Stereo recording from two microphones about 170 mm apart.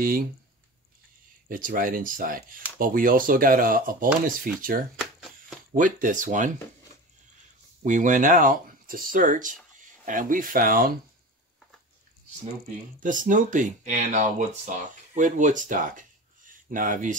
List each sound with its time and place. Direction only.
1.5 s speech: 55° right (ahead or behind)
7.8 s speech: 50° right (ahead or behind)
13.0 s speech: 50° right (ahead or behind)